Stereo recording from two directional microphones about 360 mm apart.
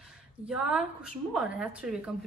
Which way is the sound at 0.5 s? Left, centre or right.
Centre.